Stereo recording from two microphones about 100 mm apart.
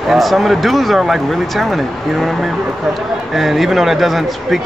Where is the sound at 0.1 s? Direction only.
Centre (ahead or behind).